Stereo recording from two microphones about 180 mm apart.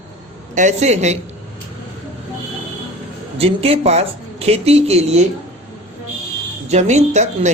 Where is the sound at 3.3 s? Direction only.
35° right (ahead or behind).